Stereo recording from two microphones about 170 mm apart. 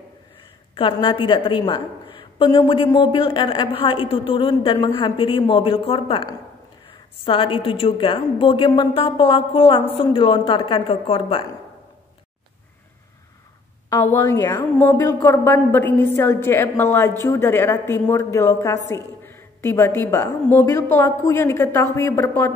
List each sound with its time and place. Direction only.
0.7 s a woman's voice: 30° left (ahead or behind)
14.1 s a woman's voice: 15° left (ahead or behind)